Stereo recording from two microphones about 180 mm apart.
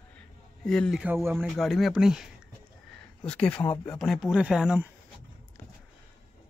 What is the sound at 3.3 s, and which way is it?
Speech, 5° left (ahead or behind).